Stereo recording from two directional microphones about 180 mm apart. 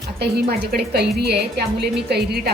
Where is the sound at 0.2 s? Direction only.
65° right (ahead or behind).